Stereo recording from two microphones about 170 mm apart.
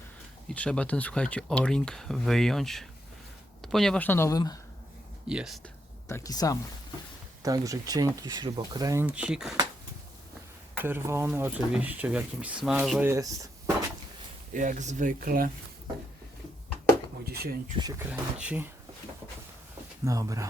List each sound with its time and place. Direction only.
0.4 s speech: 5° left (ahead or behind)
5.3 s speech: 5° right (ahead or behind)
5.6 s a sound: 15° left (ahead or behind)
7.4 s speech: 20° right (ahead or behind)
9.0 s speech: 5° right (ahead or behind)
10.8 s speech: 15° right (ahead or behind)
13.1 s speech: 20° right (ahead or behind)
14.5 s speech: 50° right (ahead or behind)
17.2 s speech: 65° right (ahead or behind)
18.1 s speech: 10° right (ahead or behind)
20.1 s speech: 20° right (ahead or behind)